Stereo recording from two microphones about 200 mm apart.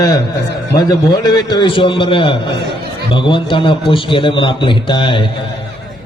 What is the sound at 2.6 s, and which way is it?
Speech, 55° right (ahead or behind).